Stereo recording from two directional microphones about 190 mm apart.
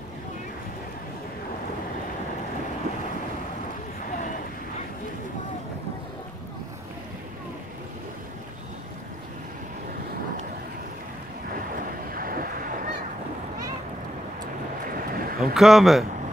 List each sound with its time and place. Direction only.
12.1 s boat: 50° right (ahead or behind)
14.9 s boat: 50° right (ahead or behind)
15.5 s speech: centre (ahead or behind)